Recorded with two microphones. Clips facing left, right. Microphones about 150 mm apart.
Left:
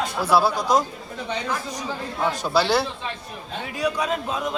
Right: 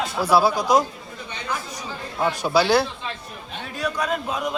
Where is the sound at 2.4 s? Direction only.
5° right (ahead or behind).